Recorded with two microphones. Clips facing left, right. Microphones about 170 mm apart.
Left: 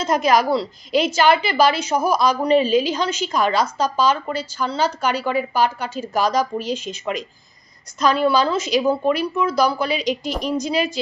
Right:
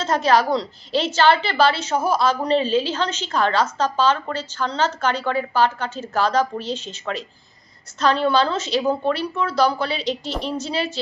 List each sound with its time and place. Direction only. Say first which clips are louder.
0.0 s a woman's voice: left 1 dB; 10° left (ahead or behind)